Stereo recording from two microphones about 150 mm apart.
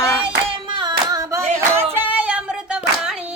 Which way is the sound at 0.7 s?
25° right (ahead or behind).